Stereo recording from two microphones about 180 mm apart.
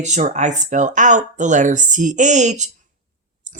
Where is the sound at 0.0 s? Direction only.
40° right (ahead or behind).